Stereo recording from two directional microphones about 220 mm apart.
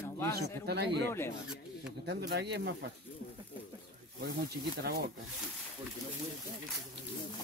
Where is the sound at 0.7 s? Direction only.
50° right (ahead or behind).